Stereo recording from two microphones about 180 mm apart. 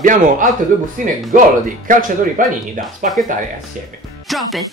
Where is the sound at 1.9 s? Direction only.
50° right (ahead or behind).